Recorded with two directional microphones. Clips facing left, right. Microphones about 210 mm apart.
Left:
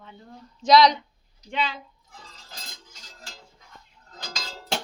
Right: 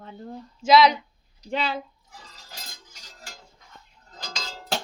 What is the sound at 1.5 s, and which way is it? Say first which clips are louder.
Speech: right 2 dB; 40° right (ahead or behind).